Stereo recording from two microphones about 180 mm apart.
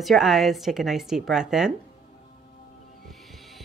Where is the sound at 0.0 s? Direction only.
Centre (ahead or behind).